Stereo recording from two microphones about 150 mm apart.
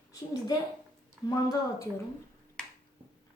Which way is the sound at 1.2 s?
20° left (ahead or behind).